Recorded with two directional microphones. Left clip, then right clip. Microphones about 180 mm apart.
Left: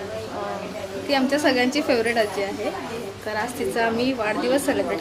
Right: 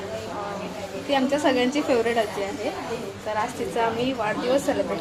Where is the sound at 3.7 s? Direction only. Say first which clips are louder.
Left 1 dB; 20° left (ahead or behind).